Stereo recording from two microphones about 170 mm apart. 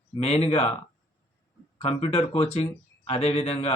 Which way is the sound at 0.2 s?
40° left (ahead or behind).